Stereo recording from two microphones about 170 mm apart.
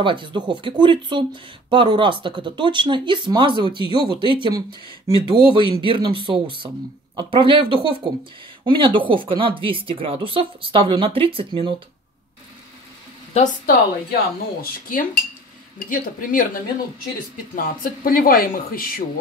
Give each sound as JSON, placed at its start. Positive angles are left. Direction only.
{"t": 0.0, "sound": "speech", "side_deg": -30}
{"t": 13.3, "sound": "speech", "side_deg": 45}
{"t": 17.6, "sound": "speech", "side_deg": 55}